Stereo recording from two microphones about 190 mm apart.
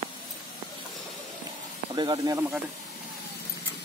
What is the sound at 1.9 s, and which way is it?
Speech, 25° right (ahead or behind).